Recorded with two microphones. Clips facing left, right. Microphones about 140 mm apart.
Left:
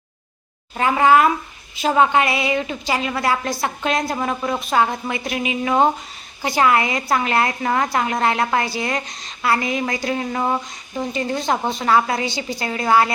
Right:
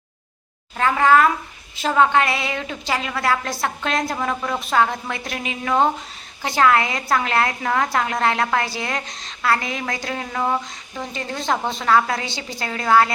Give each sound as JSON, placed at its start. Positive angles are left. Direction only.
{"t": 0.8, "sound": "a woman's voice", "side_deg": 15}